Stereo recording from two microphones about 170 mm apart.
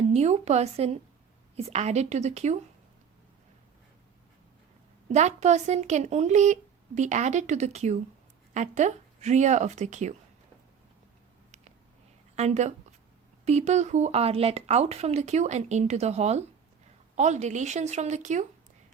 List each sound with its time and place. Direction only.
0.1 s speech: 40° right (ahead or behind)
5.0 s speech: 40° right (ahead or behind)
12.4 s speech: 40° right (ahead or behind)